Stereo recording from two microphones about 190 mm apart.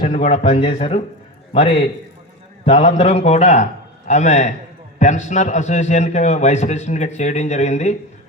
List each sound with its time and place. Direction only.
0.0 s a man's voice: 40° left (ahead or behind)
2.6 s a man's voice: 40° left (ahead or behind)